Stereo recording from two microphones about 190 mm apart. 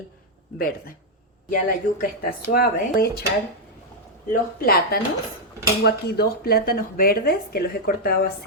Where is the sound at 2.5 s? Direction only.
55° left (ahead or behind).